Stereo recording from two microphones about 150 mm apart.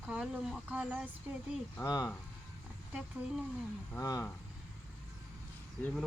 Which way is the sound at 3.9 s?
20° left (ahead or behind).